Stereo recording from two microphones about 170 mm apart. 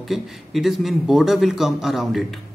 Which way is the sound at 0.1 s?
Centre (ahead or behind).